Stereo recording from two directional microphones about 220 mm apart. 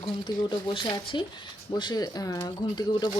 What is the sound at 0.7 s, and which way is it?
Speech, 20° left (ahead or behind).